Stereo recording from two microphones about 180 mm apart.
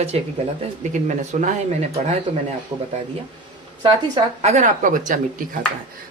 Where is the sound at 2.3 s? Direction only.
30° right (ahead or behind).